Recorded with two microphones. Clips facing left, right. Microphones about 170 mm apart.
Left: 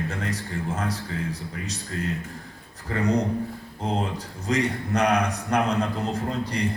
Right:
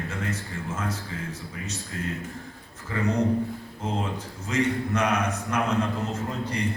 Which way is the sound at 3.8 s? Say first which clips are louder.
Left 3 dB; 35° left (ahead or behind).